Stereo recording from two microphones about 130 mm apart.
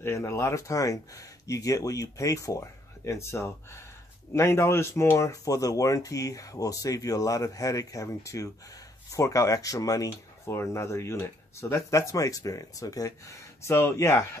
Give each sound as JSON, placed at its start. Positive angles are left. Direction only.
{"t": 0.0, "sound": "speech", "side_deg": 20}